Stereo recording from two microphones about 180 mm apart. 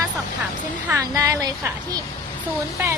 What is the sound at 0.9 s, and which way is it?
Speech, 15° right (ahead or behind).